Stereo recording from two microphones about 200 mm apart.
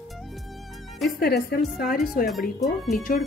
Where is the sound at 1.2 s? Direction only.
50° left (ahead or behind).